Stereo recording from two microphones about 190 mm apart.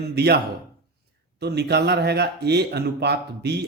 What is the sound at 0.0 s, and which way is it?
Speech, 60° right (ahead or behind).